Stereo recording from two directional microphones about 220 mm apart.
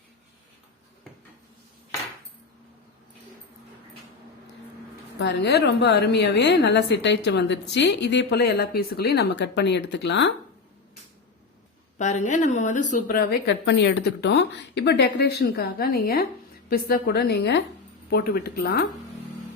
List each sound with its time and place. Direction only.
5.2 s a woman's voice: 50° left (ahead or behind)
11.9 s a woman's voice: 35° left (ahead or behind)